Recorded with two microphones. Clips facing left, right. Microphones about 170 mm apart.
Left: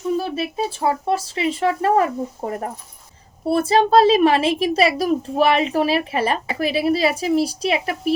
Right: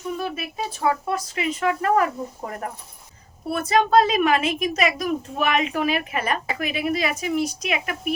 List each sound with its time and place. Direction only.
0.1 s a woman's voice: 30° left (ahead or behind)